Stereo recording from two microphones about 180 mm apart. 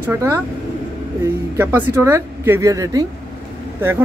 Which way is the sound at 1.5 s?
15° right (ahead or behind).